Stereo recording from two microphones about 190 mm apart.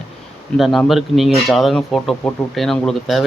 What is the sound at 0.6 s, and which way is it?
Speech, centre (ahead or behind).